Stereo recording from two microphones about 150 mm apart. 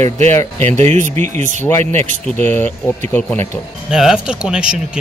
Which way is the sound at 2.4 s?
10° left (ahead or behind).